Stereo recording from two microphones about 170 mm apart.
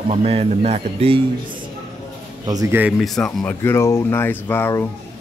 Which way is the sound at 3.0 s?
Centre (ahead or behind).